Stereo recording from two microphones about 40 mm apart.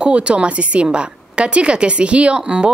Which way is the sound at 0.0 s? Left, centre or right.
Right.